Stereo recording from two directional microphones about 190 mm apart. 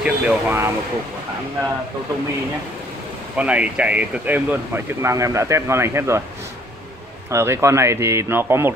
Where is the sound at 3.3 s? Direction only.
5° right (ahead or behind).